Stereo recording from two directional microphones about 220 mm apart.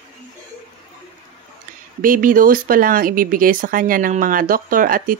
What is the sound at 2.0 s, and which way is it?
Speech, 40° right (ahead or behind).